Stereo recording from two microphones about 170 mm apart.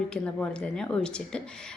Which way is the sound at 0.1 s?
5° left (ahead or behind).